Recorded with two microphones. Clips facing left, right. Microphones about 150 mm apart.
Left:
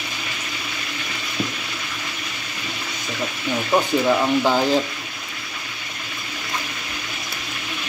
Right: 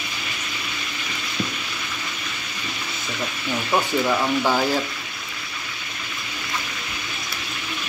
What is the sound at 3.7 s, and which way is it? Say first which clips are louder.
Speech: left 3 dB; 15° left (ahead or behind).